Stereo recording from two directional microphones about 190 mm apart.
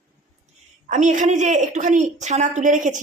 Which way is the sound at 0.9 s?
40° right (ahead or behind).